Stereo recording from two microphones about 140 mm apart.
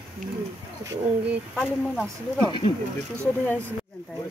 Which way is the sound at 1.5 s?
5° left (ahead or behind).